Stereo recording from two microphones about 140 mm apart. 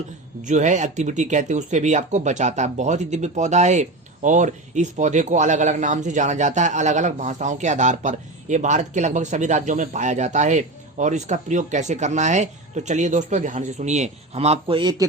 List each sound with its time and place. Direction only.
0.4 s speech: 60° right (ahead or behind); by 15.0 s 30° right (ahead or behind)